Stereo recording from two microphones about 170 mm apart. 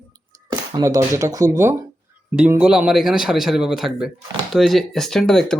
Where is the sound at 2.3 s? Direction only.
5° right (ahead or behind).